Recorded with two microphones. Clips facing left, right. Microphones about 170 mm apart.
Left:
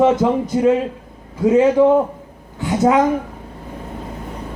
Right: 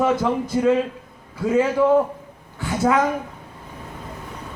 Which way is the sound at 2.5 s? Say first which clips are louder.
Left 5 dB; 20° left (ahead or behind).